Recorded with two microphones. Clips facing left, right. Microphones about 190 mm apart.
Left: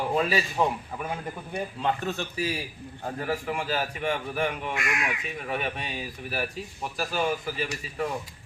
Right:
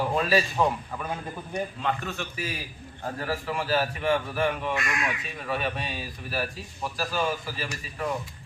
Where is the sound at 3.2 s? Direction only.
15° left (ahead or behind).